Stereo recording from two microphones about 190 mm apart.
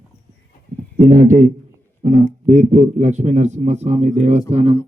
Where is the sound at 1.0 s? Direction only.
40° right (ahead or behind).